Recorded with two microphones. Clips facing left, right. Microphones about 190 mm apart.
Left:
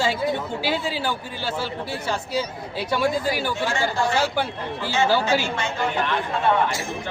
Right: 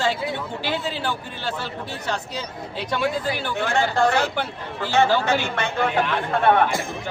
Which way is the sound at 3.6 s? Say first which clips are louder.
Right 7 dB; 60° right (ahead or behind).